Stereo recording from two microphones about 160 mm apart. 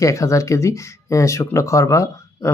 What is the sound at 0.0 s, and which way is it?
Speech, 20° left (ahead or behind).